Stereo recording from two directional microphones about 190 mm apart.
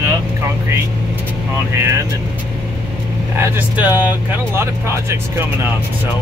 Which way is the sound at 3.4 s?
10° right (ahead or behind).